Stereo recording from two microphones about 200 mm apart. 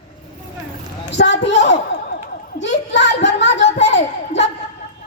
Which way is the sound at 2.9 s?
65° left (ahead or behind).